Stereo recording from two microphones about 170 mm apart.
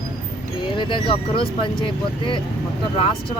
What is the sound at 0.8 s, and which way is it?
Speech, 30° left (ahead or behind).